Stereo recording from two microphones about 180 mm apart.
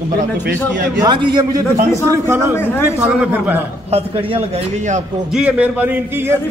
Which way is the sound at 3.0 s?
5° right (ahead or behind).